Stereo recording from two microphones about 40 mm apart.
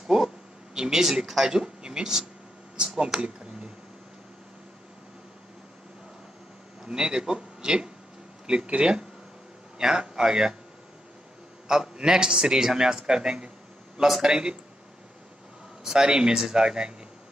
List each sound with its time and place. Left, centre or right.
0.1 s a sound: centre
0.7 s a man's voice: centre
3.2 s a sound: right
6.8 s a man's voice: centre
11.6 s a man's voice: centre
15.8 s a man's voice: centre